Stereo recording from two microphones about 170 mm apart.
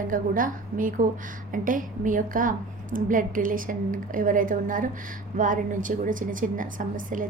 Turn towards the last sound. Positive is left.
turn(degrees=-50)  # may be behind; listen again after turning